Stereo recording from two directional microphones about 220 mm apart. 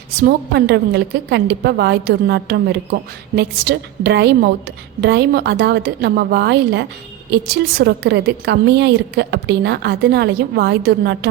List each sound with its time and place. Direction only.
0.2 s a woman's voice: 45° right (ahead or behind)